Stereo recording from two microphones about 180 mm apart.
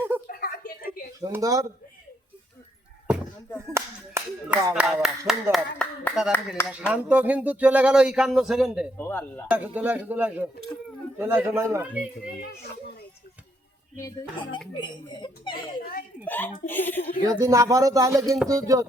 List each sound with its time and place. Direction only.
0.3 s a sound: 55° left (ahead or behind)
1.2 s speech: 20° right (ahead or behind)
3.7 s speech: 15° right (ahead or behind)
9.0 s speech: 10° left (ahead or behind)
9.5 s speech: 5° right (ahead or behind)
14.8 s a child's voice: 25° left (ahead or behind)
15.8 s speech: 55° left (ahead or behind)
16.2 s speech: 10° left (ahead or behind)
17.4 s speech: 20° right (ahead or behind)